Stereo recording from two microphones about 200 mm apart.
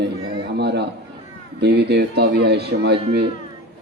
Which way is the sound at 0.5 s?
55° right (ahead or behind).